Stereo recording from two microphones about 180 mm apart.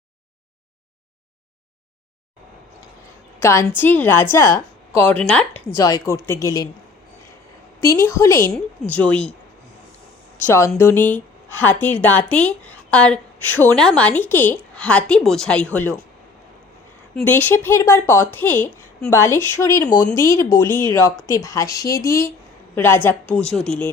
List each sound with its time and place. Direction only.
3.4 s a woman's voice: 15° left (ahead or behind)
5.8 s a woman's voice: 20° left (ahead or behind)
7.8 s a woman's voice: 15° left (ahead or behind)
10.3 s a woman's voice: 15° left (ahead or behind)
17.2 s a woman's voice: 10° left (ahead or behind)